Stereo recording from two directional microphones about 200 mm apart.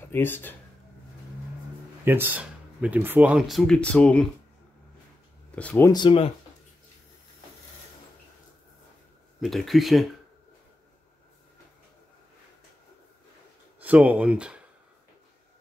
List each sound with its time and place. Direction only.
0.1 s speech: 10° left (ahead or behind)
2.0 s speech: 10° right (ahead or behind)
5.6 s speech: 5° left (ahead or behind)
5.9 s speech: 25° left (ahead or behind)
9.4 s speech: centre (ahead or behind)
13.7 s speech: 10° right (ahead or behind)